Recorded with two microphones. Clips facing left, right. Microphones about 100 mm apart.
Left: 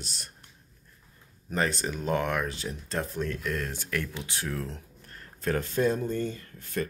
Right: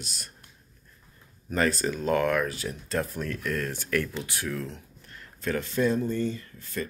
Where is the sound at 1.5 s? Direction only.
20° left (ahead or behind).